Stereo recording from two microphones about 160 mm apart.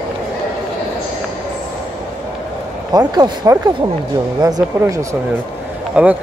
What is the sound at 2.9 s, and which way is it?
Speech, 20° right (ahead or behind).